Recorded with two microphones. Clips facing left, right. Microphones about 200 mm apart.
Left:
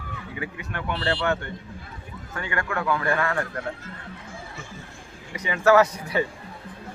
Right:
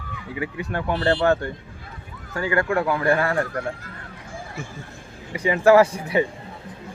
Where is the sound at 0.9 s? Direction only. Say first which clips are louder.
Right 6 dB; 45° right (ahead or behind).